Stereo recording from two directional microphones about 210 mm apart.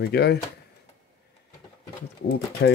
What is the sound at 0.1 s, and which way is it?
Speech, 50° left (ahead or behind).